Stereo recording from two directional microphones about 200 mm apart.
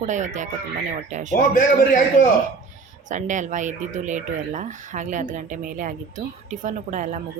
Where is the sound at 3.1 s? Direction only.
40° right (ahead or behind).